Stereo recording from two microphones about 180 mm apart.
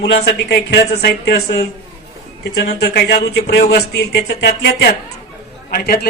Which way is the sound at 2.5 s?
65° left (ahead or behind).